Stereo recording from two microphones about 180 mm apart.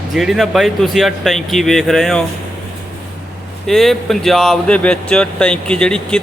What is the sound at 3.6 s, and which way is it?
Speech, centre (ahead or behind).